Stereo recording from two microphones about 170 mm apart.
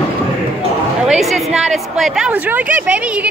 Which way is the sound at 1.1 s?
Centre (ahead or behind).